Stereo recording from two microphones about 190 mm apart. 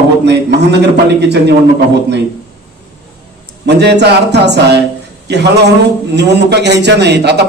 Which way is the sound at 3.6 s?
60° right (ahead or behind).